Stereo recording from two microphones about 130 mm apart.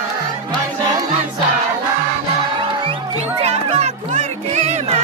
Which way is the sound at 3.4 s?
55° right (ahead or behind).